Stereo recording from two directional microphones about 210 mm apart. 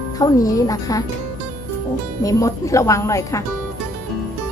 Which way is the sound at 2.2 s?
15° left (ahead or behind).